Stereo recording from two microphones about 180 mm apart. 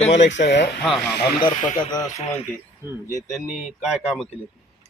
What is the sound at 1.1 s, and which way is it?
Speech, 65° left (ahead or behind).